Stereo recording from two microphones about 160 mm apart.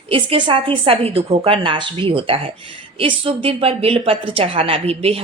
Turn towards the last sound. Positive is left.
turn(degrees=-40)  # may be behind; listen again after turning